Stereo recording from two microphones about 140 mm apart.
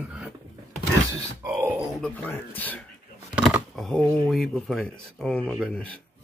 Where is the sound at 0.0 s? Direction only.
5° right (ahead or behind).